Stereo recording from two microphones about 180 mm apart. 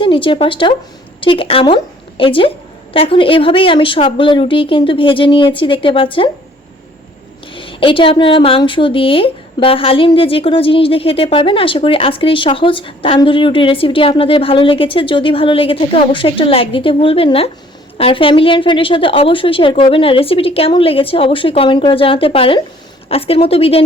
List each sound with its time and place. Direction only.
0.0 s a woman's voice: 30° left (ahead or behind)
7.5 s a woman's voice: 30° left (ahead or behind)